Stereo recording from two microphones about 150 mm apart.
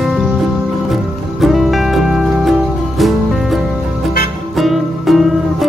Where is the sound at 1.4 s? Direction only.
Centre (ahead or behind).